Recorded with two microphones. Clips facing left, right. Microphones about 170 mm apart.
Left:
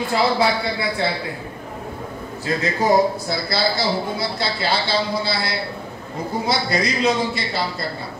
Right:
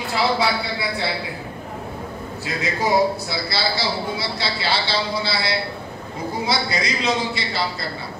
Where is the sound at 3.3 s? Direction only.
50° left (ahead or behind).